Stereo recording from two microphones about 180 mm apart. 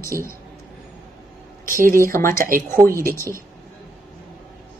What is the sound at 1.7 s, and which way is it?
Speech, 50° right (ahead or behind).